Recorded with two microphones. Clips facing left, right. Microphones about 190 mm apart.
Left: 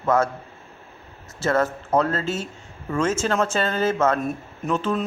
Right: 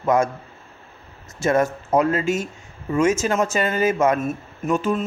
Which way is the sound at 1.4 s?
15° right (ahead or behind).